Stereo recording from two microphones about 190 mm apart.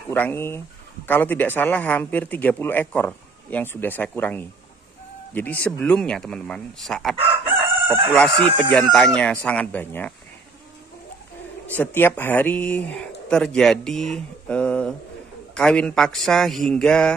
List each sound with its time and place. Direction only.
0.1 s speech: 10° left (ahead or behind)
7.2 s chicken: 25° right (ahead or behind)
8.1 s speech: 5° left (ahead or behind)
11.7 s speech: 10° left (ahead or behind)